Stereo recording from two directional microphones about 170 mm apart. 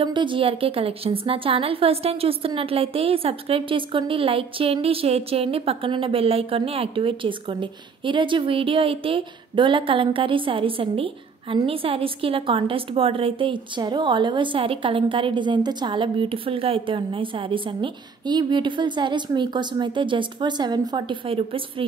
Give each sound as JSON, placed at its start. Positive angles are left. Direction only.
{"t": 0.0, "sound": "a woman's voice", "side_deg": -30}